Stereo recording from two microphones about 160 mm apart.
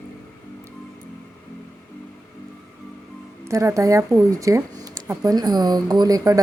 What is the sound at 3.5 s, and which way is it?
Speech, 20° right (ahead or behind).